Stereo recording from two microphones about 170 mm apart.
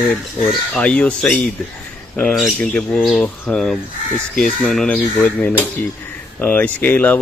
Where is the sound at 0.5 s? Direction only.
5° left (ahead or behind).